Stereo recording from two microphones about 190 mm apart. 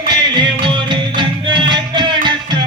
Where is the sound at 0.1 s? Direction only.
25° right (ahead or behind).